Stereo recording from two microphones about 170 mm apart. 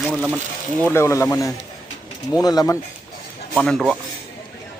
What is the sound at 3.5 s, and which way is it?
Speech, centre (ahead or behind).